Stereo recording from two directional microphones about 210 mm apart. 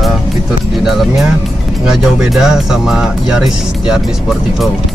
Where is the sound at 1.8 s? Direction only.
5° right (ahead or behind).